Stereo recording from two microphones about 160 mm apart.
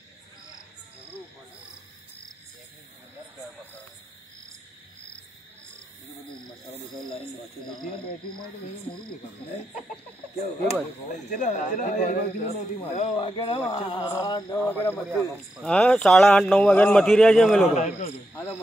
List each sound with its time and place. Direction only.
10.7 s speech: 50° left (ahead or behind)
13.2 s speech: 30° left (ahead or behind)
14.7 s speech: 15° left (ahead or behind)
17.7 s speech: 45° left (ahead or behind)
18.3 s a sound: 15° left (ahead or behind)